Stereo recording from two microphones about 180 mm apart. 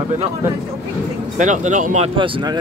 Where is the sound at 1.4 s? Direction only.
45° right (ahead or behind).